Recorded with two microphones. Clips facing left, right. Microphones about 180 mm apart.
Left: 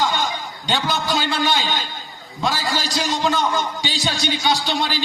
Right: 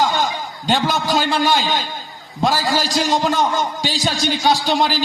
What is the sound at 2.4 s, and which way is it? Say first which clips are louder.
A man's voice: right 5 dB; 45° right (ahead or behind).